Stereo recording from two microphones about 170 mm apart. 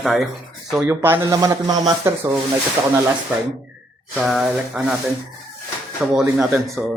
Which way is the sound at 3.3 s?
10° right (ahead or behind).